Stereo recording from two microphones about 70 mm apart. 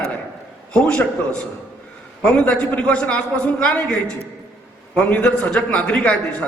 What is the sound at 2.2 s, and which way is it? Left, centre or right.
A man's voice, centre.